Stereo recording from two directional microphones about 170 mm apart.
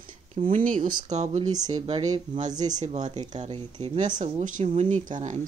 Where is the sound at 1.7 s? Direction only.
35° right (ahead or behind).